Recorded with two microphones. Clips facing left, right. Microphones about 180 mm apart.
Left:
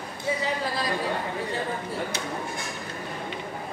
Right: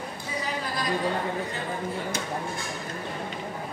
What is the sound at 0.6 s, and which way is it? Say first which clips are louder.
Speech: left 2 dB; 30° left (ahead or behind).